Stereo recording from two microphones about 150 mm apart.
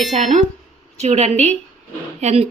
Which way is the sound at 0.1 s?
50° right (ahead or behind).